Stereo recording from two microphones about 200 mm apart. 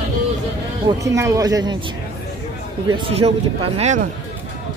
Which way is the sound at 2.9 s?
30° right (ahead or behind).